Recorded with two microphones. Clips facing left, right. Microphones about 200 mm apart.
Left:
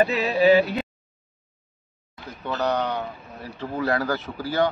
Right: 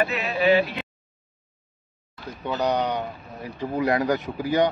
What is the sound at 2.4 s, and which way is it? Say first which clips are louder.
A man's voice: right 1 dB; 15° right (ahead or behind).